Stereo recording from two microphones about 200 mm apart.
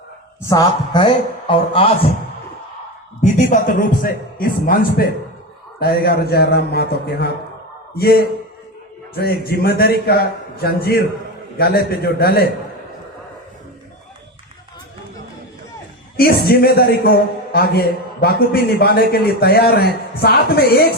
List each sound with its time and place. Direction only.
0.4 s speech: 20° left (ahead or behind)
3.2 s a man's voice: 40° left (ahead or behind)
16.1 s a man's voice: 50° left (ahead or behind)